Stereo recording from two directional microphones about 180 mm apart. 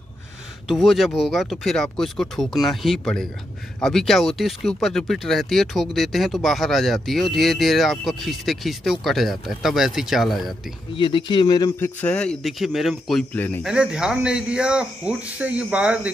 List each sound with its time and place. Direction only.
0.7 s speech: centre (ahead or behind)
11.0 s speech: 25° left (ahead or behind)
12.0 s speech: 5° left (ahead or behind)
13.7 s speech: 5° right (ahead or behind)